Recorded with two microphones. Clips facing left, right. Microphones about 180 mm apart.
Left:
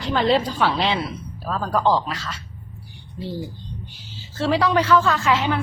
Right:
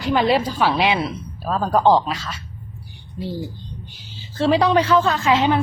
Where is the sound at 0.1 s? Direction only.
10° right (ahead or behind).